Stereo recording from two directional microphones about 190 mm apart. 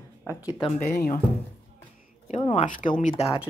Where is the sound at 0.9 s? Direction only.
55° left (ahead or behind).